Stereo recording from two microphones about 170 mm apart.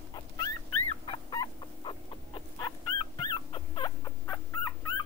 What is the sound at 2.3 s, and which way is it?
Dog, 30° left (ahead or behind).